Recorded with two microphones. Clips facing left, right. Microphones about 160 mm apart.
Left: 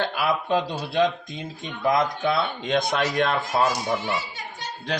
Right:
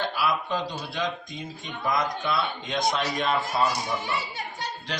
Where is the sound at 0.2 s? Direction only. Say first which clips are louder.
Left 5 dB; 55° left (ahead or behind).